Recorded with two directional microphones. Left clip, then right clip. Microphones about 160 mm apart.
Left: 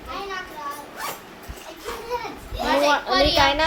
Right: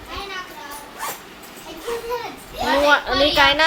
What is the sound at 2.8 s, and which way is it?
Speech, 5° right (ahead or behind).